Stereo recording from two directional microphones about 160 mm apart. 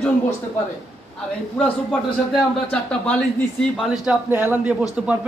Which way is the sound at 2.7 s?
10° left (ahead or behind).